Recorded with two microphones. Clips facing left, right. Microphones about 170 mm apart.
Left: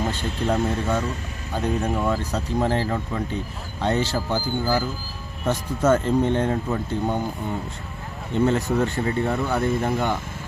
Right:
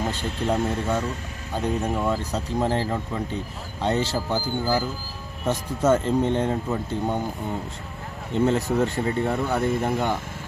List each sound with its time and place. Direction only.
0.2 s speech: 5° right (ahead or behind)
8.4 s speech: 25° right (ahead or behind)